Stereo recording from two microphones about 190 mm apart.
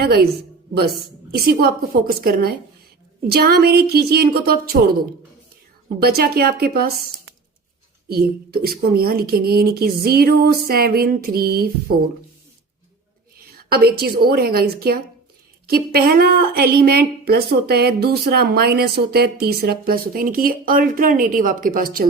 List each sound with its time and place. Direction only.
0.0 s a woman's voice: 55° right (ahead or behind)
6.0 s a woman's voice: 55° right (ahead or behind)
8.1 s speech: 55° right (ahead or behind)
13.7 s a woman's voice: 55° right (ahead or behind)